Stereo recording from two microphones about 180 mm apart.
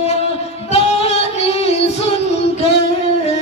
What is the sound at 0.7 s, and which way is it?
Female singing, 35° left (ahead or behind).